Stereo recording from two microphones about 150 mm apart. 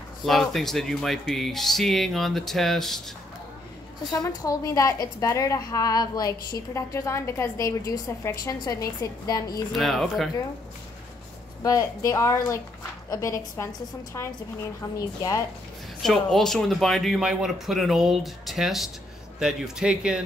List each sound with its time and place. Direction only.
0.2 s speech: centre (ahead or behind)
4.1 s a woman's voice: 25° left (ahead or behind)
9.7 s speech: centre (ahead or behind)
11.6 s a woman's voice: 20° left (ahead or behind)
16.0 s speech: centre (ahead or behind)